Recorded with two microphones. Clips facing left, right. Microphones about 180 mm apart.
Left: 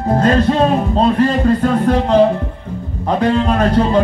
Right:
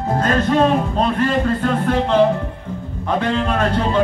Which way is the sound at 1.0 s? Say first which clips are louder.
Left 7 dB; 35° left (ahead or behind).